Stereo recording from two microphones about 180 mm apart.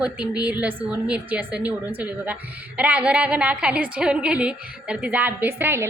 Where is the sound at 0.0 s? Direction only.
5° right (ahead or behind).